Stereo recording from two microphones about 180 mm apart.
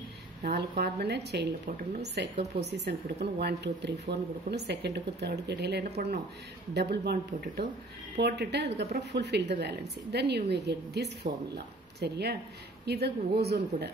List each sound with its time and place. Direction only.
0.4 s a woman's voice: 60° right (ahead or behind)